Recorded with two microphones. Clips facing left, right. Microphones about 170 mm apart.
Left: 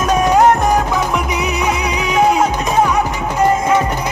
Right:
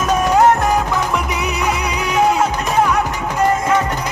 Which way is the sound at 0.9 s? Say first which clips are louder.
Left 2 dB; 15° left (ahead or behind).